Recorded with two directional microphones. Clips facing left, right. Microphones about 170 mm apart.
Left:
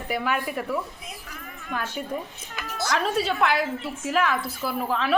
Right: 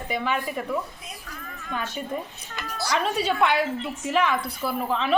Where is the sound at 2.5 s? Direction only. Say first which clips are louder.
Even; 10° left (ahead or behind).